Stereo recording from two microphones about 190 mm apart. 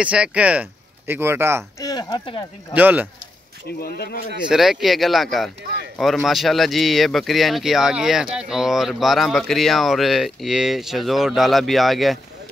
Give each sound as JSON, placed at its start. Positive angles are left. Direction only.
{"t": 0.0, "sound": "speech", "side_deg": -5}
{"t": 1.8, "sound": "speech", "side_deg": 20}
{"t": 2.7, "sound": "speech", "side_deg": -10}
{"t": 3.6, "sound": "speech", "side_deg": 55}
{"t": 4.5, "sound": "speech", "side_deg": 0}
{"t": 5.6, "sound": "speech", "side_deg": -60}
{"t": 5.9, "sound": "speech", "side_deg": 0}